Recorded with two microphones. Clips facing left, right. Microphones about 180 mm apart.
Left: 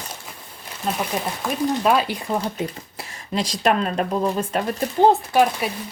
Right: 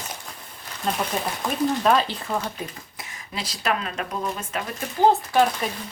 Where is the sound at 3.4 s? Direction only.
45° left (ahead or behind).